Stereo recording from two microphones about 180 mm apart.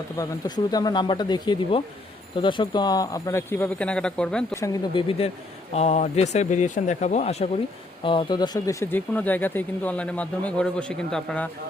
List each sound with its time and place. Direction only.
0.2 s speech: 20° left (ahead or behind); by 4.4 s 5° left (ahead or behind)
4.5 s speech: 15° left (ahead or behind)
4.9 s speech: 30° left (ahead or behind); by 11.4 s 5° left (ahead or behind)